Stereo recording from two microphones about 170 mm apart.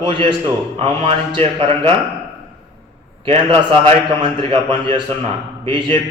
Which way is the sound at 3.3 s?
35° right (ahead or behind).